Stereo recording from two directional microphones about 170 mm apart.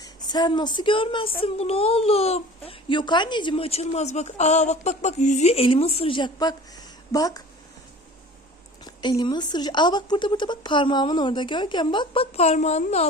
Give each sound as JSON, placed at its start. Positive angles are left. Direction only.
{"t": 0.0, "sound": "a child's voice", "side_deg": 25}
{"t": 8.8, "sound": "a woman's voice", "side_deg": 25}